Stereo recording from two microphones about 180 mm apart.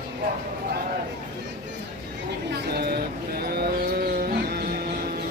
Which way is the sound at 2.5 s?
60° right (ahead or behind).